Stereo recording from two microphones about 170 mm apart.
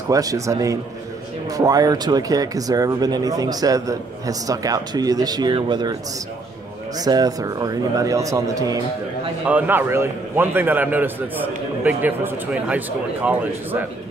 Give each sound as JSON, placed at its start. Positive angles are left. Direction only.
{"t": 0.1, "sound": "speech", "side_deg": -20}
{"t": 7.0, "sound": "speech", "side_deg": -20}
{"t": 9.5, "sound": "a man's voice", "side_deg": -10}